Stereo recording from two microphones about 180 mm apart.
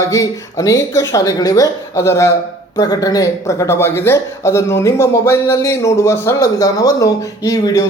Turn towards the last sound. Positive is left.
turn(degrees=20)  # may be behind; listen again after turning